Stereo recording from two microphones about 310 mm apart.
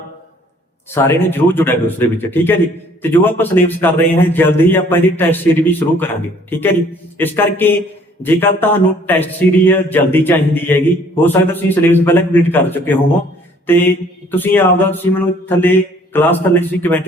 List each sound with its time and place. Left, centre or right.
0.9 s speech: centre
14.3 s speech: centre